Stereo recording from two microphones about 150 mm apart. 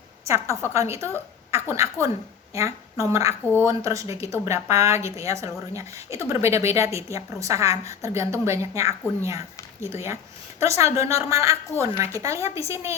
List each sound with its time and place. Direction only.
0.3 s speech: 20° right (ahead or behind)